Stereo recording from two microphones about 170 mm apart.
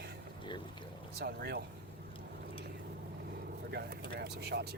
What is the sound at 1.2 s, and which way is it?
Speech, 70° right (ahead or behind).